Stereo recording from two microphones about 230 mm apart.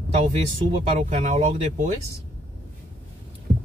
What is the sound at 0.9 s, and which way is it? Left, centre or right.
Speech, right.